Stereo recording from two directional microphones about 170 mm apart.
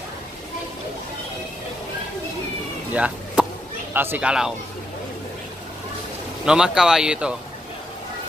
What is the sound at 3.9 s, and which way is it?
Speech, 10° right (ahead or behind).